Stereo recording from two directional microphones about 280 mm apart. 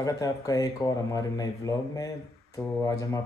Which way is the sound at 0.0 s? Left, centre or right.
Centre.